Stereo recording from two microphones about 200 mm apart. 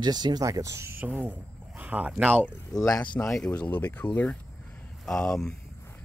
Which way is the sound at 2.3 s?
10° left (ahead or behind).